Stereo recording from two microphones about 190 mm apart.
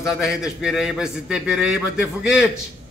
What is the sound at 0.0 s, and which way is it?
A man's voice, centre (ahead or behind).